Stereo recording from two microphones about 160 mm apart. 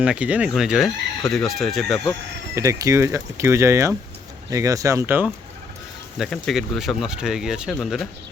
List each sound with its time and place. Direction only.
0.0 s speech: 5° right (ahead or behind)
2.6 s speech: 20° right (ahead or behind)
6.1 s speech: centre (ahead or behind)